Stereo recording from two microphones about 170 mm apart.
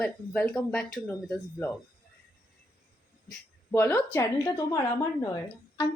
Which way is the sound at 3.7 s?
15° left (ahead or behind).